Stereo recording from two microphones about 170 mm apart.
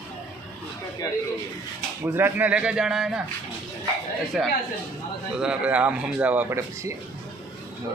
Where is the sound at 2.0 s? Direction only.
10° right (ahead or behind).